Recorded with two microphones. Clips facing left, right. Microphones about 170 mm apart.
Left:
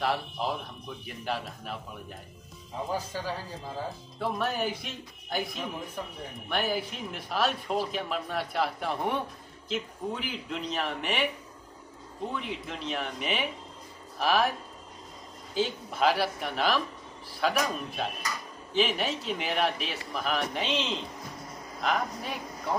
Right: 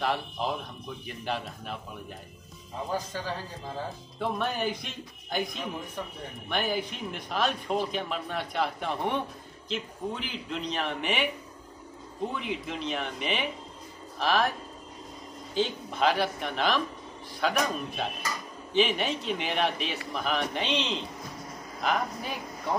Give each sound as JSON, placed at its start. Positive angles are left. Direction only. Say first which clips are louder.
{"t": 0.0, "sound": "speech", "louder": "even", "side_deg": 5}
{"t": 2.9, "sound": "speech", "louder": "right 1 dB", "side_deg": 10}
{"t": 12.3, "sound": "speech", "louder": "even", "side_deg": 0}
{"t": 15.5, "sound": "speech", "louder": "right 1 dB", "side_deg": 5}